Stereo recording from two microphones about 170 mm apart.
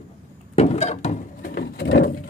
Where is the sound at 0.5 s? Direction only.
40° left (ahead or behind); by 2.1 s 65° left (ahead or behind).